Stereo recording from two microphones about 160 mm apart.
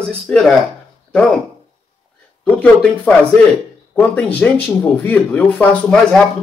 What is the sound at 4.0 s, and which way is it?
Speech, 10° left (ahead or behind).